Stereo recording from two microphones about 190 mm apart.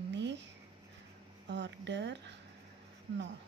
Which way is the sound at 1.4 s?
65° right (ahead or behind).